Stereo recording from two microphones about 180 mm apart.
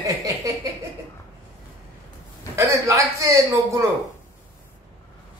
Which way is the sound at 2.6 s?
15° right (ahead or behind).